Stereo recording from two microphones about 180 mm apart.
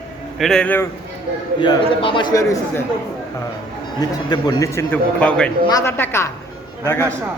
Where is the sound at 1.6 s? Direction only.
25° left (ahead or behind).